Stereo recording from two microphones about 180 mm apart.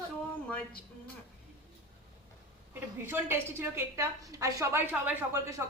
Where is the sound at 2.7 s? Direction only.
10° right (ahead or behind).